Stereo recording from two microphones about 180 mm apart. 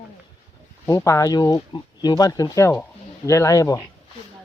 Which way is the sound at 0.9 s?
15° left (ahead or behind).